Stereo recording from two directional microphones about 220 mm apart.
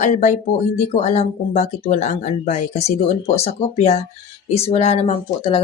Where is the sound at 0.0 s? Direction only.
30° left (ahead or behind).